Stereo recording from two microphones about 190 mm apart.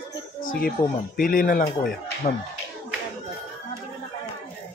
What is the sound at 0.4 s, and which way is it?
Speech, 50° left (ahead or behind).